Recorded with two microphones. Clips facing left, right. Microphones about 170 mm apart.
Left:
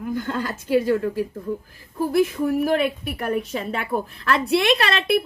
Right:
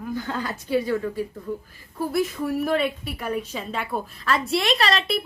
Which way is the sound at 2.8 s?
50° left (ahead or behind).